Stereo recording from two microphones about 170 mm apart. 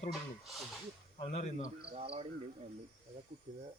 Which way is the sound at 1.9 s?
35° right (ahead or behind).